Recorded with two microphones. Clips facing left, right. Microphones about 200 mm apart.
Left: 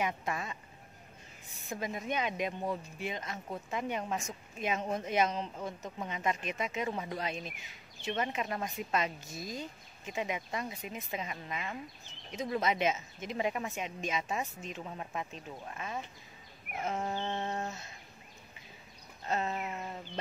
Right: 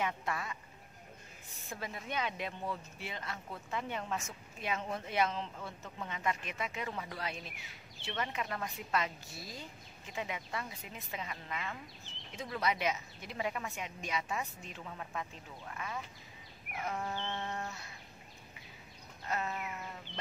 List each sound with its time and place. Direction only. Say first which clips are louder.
0.0 s a woman's voice: left 2 dB; 20° left (ahead or behind)
1.7 s a woman's voice: left 6 dB; 20° left (ahead or behind)
19.2 s a woman's voice: left 4 dB; 25° left (ahead or behind)